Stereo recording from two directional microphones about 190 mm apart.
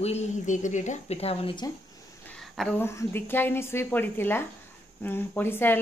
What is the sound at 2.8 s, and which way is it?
Speech, 15° left (ahead or behind).